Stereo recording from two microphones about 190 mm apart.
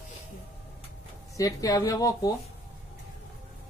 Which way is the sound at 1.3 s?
20° left (ahead or behind).